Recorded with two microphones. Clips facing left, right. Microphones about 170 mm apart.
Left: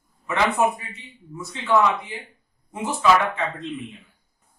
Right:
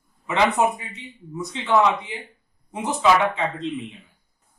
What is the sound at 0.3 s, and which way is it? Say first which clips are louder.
Speech: right 1 dB; 15° right (ahead or behind).